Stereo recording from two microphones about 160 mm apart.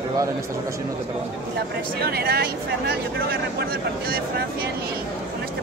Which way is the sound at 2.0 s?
75° right (ahead or behind).